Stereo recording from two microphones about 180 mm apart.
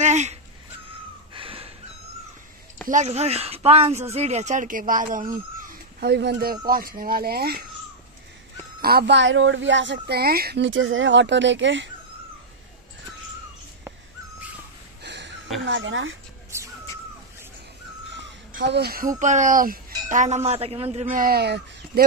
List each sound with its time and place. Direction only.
0.0 s a sound: 40° right (ahead or behind)
2.9 s speech: 40° right (ahead or behind)
5.7 s speech: 60° right (ahead or behind)
8.8 s speech: 65° right (ahead or behind); by 11.9 s 90° right
15.0 s a sound: 75° right (ahead or behind)
15.6 s speech: 85° right
18.6 s speech: 70° right (ahead or behind); by 21.2 s 35° right (ahead or behind)
21.2 s speech: 60° right (ahead or behind)